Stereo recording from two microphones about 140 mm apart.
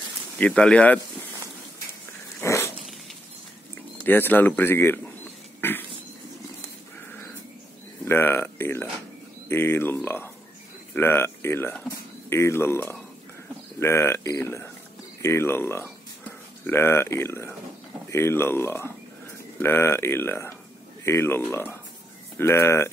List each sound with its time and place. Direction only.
0.4 s speech: 5° left (ahead or behind)
2.4 s dog: 20° left (ahead or behind)
4.0 s speech: 15° left (ahead or behind)
5.6 s a sound: 15° left (ahead or behind)
8.0 s speech: 15° left (ahead or behind)